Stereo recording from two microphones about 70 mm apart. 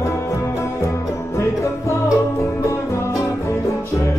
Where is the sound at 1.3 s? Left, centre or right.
Left.